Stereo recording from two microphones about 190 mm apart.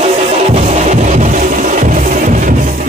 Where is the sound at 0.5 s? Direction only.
35° right (ahead or behind).